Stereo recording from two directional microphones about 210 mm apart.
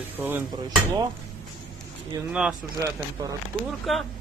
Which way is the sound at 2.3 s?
5° right (ahead or behind).